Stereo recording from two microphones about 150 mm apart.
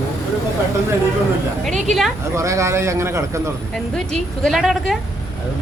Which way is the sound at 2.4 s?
20° right (ahead or behind).